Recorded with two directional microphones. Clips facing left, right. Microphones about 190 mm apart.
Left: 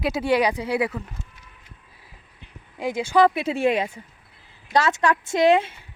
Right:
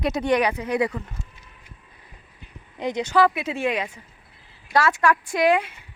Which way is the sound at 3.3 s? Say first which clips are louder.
Left 4 dB; 30° left (ahead or behind).